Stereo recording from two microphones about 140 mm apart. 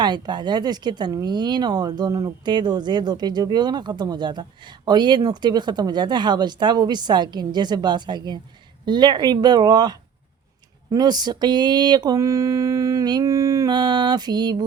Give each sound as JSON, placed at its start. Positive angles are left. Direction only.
{"t": 0.0, "sound": "speech", "side_deg": -30}
{"t": 10.9, "sound": "mantra", "side_deg": -30}